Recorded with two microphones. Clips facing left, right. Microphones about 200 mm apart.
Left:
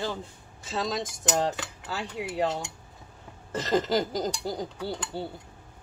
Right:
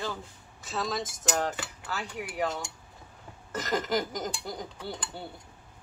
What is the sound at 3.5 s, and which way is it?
Speech, 25° left (ahead or behind).